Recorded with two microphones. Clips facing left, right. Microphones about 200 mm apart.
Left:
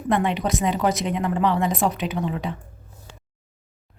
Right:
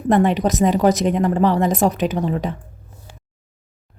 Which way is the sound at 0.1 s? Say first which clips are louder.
Right 6 dB; 40° right (ahead or behind).